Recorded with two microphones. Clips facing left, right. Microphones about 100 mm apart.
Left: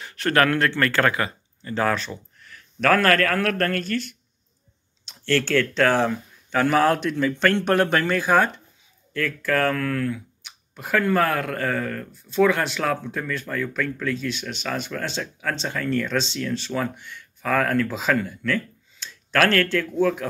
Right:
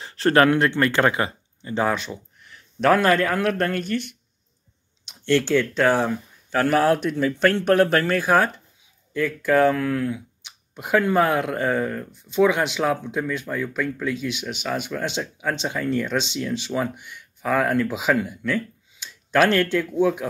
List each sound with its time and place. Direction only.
0.0 s speech: 30° right (ahead or behind); by 8.5 s 5° right (ahead or behind)
9.1 s speech: 15° right (ahead or behind)